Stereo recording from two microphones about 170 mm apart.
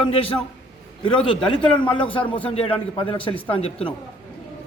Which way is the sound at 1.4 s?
30° left (ahead or behind).